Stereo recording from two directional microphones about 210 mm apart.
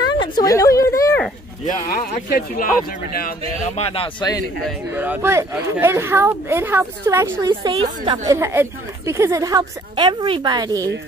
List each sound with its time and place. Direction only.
0.2 s speech: 15° left (ahead or behind)
1.9 s speech: 45° left (ahead or behind); by 4.4 s 25° left (ahead or behind)
4.6 s speech: 10° right (ahead or behind)